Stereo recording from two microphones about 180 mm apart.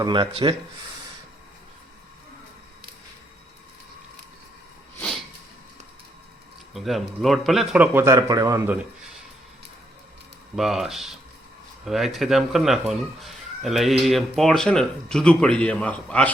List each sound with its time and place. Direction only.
0.0 s speech: 25° right (ahead or behind)
6.7 s a man's voice: centre (ahead or behind); by 8.7 s 20° right (ahead or behind)
10.5 s speech: centre (ahead or behind)